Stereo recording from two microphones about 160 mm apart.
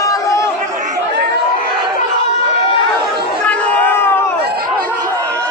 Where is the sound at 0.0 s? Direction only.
20° left (ahead or behind).